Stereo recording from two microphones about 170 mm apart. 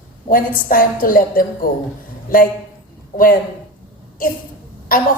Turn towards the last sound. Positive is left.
turn(degrees=55)  # may be behind; listen again after turning